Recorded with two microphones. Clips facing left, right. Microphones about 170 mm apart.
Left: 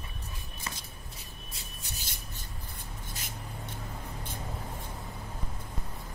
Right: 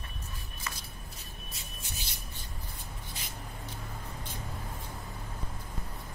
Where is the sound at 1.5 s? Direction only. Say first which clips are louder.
Right 1 dB; 40° left (ahead or behind).